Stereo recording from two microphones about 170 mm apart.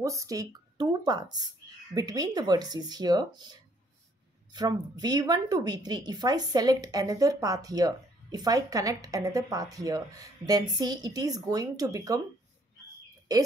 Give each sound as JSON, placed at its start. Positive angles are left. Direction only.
{"t": 0.0, "sound": "speech", "side_deg": -20}
{"t": 13.3, "sound": "speech", "side_deg": -20}